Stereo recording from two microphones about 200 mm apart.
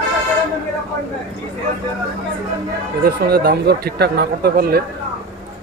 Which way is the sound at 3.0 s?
50° right (ahead or behind).